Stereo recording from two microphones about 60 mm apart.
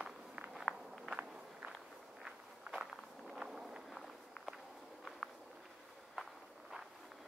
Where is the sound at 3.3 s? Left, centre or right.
Centre.